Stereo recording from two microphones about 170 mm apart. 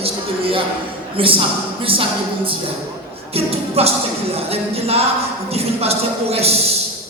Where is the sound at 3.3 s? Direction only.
35° right (ahead or behind).